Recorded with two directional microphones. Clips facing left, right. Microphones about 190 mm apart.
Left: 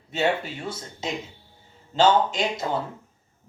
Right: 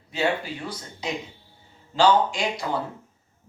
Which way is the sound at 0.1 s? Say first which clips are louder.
Left 1 dB; 25° left (ahead or behind).